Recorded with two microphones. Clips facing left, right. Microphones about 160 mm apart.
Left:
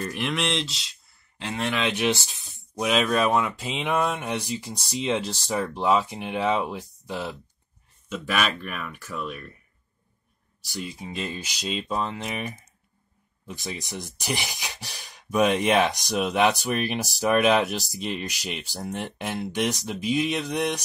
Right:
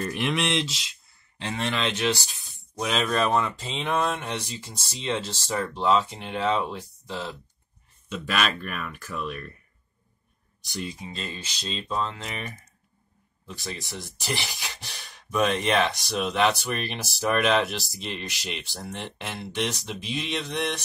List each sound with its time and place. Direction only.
0.1 s speech: centre (ahead or behind)
10.8 s speech: 15° left (ahead or behind)